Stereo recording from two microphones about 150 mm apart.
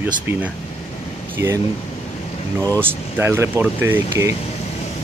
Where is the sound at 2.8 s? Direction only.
15° right (ahead or behind).